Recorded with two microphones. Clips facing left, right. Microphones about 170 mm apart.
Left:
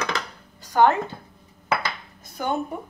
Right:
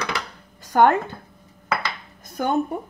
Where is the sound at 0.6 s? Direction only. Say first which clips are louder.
Right 2 dB; 50° right (ahead or behind).